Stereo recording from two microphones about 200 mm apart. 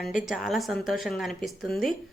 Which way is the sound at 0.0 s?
Centre (ahead or behind).